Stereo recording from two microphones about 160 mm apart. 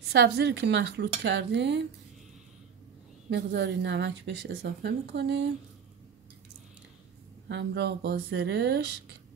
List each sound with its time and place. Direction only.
0.1 s a woman's voice: 90° right
3.3 s a woman's voice: 90° right
7.4 s a woman's voice: 90° right